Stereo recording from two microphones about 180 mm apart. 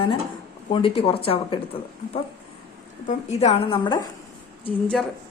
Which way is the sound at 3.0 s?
35° left (ahead or behind).